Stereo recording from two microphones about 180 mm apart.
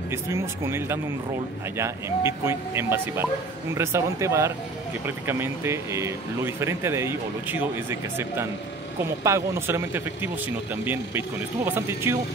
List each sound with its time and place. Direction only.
0.1 s speech: 15° right (ahead or behind)